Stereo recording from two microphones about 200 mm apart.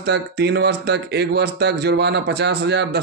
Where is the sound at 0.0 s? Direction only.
55° right (ahead or behind).